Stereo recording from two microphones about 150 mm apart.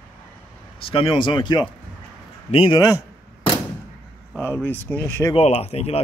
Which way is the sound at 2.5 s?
40° left (ahead or behind).